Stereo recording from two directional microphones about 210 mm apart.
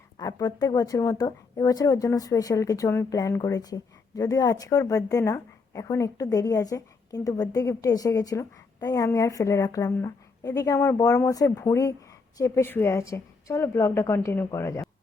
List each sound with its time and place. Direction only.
0.2 s a woman's voice: 20° left (ahead or behind)